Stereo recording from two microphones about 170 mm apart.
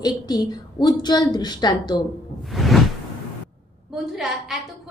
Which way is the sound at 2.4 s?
Centre (ahead or behind).